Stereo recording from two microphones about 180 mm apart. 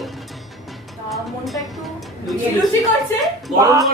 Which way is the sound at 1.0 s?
Centre (ahead or behind).